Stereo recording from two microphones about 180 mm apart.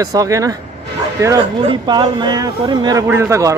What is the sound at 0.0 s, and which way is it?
Speech, 20° right (ahead or behind).